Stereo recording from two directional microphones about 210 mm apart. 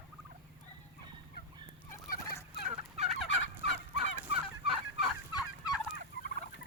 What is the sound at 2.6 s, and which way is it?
Fowl, 30° right (ahead or behind).